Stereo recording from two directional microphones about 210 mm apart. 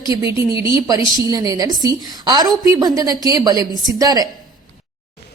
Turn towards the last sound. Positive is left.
turn(degrees=-15)  # may be behind; listen again after turning